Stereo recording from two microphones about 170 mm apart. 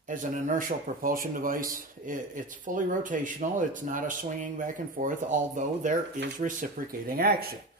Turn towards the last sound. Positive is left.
turn(degrees=-60)  # may be behind; listen again after turning